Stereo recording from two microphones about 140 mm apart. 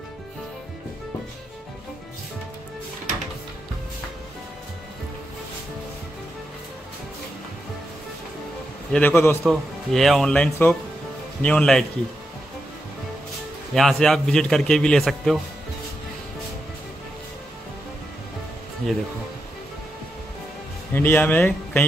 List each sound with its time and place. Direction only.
8.9 s speech: 15° left (ahead or behind)
9.4 s a man's voice: centre (ahead or behind)
13.7 s a man's voice: centre (ahead or behind)
20.9 s speech: 15° left (ahead or behind)